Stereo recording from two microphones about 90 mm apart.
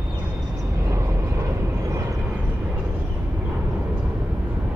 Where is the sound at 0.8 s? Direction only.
30° right (ahead or behind).